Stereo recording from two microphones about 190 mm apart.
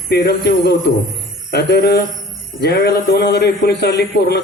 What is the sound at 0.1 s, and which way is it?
A man's voice, 55° left (ahead or behind).